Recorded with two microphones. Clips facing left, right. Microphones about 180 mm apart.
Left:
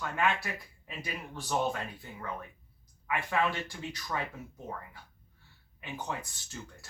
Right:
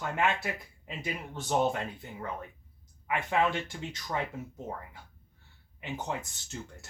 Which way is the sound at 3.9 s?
20° right (ahead or behind).